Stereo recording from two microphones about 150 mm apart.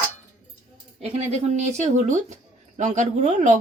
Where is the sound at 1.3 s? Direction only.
50° right (ahead or behind).